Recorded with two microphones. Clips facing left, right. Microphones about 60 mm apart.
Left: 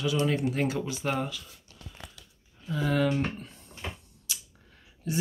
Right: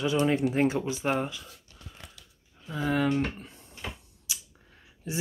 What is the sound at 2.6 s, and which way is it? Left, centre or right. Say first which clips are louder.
Speech: even; centre.